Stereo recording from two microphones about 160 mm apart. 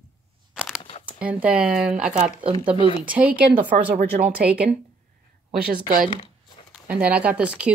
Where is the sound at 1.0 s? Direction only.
10° right (ahead or behind).